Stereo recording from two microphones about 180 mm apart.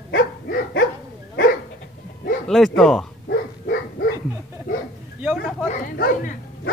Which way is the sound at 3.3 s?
60° left (ahead or behind).